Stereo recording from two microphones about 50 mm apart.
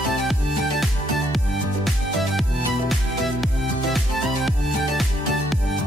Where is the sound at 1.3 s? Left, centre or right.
Centre.